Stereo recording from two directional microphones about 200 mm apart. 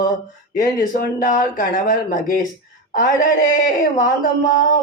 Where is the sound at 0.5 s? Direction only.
45° left (ahead or behind).